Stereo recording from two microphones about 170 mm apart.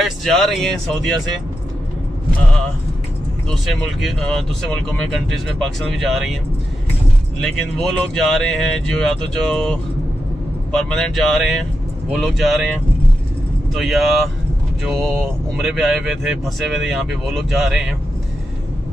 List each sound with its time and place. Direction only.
0.0 s speech: centre (ahead or behind)
3.4 s speech: centre (ahead or behind)
7.3 s speech: 5° left (ahead or behind)
13.7 s speech: centre (ahead or behind)
15.5 s speech: centre (ahead or behind)